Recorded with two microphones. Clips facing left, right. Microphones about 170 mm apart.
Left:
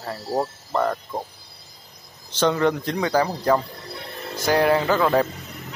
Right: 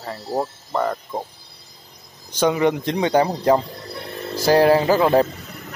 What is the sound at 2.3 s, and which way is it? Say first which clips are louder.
Speech: right 2 dB; 15° right (ahead or behind).